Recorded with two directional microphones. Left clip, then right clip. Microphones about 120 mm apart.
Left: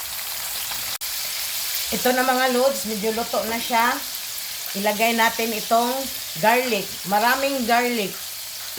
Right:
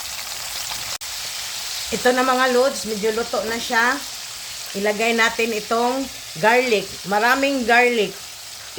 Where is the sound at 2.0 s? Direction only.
55° right (ahead or behind).